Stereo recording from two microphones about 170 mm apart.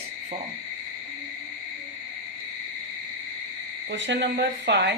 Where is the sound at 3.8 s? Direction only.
90° right.